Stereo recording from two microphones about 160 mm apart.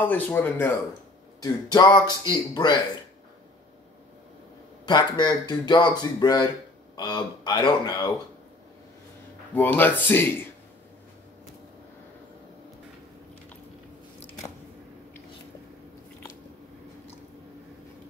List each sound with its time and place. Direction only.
0.0 s speech: 10° left (ahead or behind)
1.4 s speech: 25° left (ahead or behind)
4.8 s speech: 25° left (ahead or behind)
9.5 s speech: 10° left (ahead or behind)